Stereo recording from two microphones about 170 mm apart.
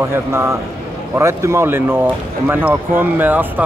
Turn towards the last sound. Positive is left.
turn(degrees=-10)  # may be behind; listen again after turning